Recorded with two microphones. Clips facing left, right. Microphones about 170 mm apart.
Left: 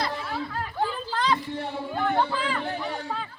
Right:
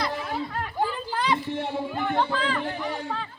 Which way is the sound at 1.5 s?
20° right (ahead or behind).